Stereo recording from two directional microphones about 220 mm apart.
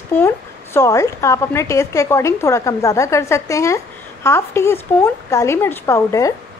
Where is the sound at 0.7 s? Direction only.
15° left (ahead or behind).